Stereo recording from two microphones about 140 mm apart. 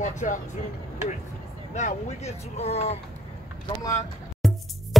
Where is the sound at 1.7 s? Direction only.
55° left (ahead or behind).